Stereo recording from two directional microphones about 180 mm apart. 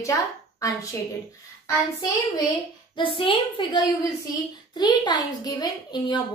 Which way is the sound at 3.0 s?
30° left (ahead or behind).